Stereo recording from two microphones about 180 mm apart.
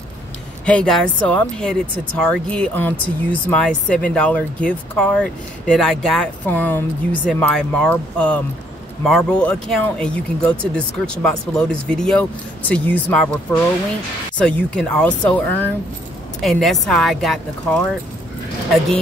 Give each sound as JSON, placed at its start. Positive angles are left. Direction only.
{"t": 0.7, "sound": "speech", "side_deg": 5}
{"t": 14.4, "sound": "speech", "side_deg": 5}